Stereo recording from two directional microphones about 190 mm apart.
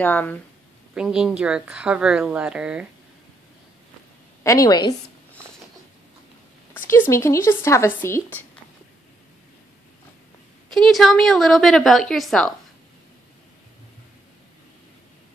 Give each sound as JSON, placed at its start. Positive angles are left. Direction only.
{"t": 0.0, "sound": "speech", "side_deg": 10}
{"t": 0.9, "sound": "speech", "side_deg": -5}
{"t": 4.4, "sound": "a woman's voice", "side_deg": 15}
{"t": 6.7, "sound": "speech", "side_deg": 10}
{"t": 10.7, "sound": "speech", "side_deg": 0}